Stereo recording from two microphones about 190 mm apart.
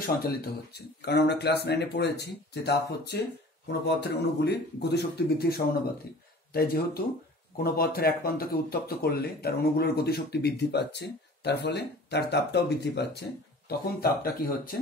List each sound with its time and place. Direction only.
0.0 s speech: 55° left (ahead or behind)